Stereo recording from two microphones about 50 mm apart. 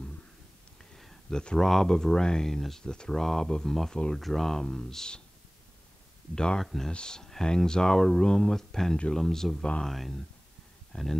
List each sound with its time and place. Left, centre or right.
0.9 s a sound: centre
1.6 s speech: centre
3.2 s speech: centre
3.4 s speech: centre
6.3 s speech: centre
6.6 s speech: centre
6.9 s speech: centre